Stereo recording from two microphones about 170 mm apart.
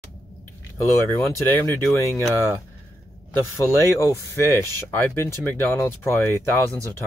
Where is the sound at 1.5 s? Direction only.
15° left (ahead or behind).